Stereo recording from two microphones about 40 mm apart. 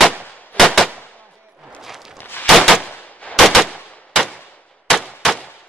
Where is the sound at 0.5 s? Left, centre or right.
Left.